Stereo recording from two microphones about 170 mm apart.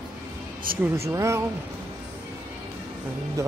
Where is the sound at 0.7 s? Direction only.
60° right (ahead or behind).